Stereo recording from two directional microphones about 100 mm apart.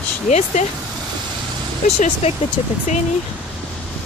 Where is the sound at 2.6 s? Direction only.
70° left (ahead or behind).